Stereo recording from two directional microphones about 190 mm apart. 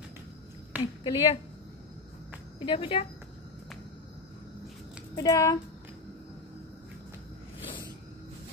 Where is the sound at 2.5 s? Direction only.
25° left (ahead or behind).